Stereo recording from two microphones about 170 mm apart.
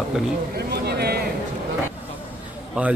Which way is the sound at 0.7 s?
70° right (ahead or behind).